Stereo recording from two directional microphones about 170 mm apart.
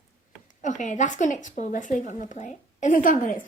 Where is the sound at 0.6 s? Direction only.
45° left (ahead or behind).